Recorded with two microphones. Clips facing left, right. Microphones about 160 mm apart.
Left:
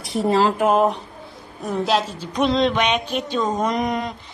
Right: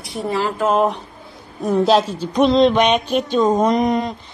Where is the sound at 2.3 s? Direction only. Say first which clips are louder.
Right 5 dB; 35° right (ahead or behind).